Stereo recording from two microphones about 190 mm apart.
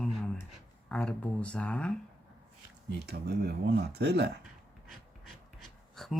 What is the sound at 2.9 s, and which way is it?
Speech, 60° right (ahead or behind).